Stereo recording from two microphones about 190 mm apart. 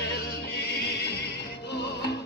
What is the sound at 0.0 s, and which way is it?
Music, 55° left (ahead or behind).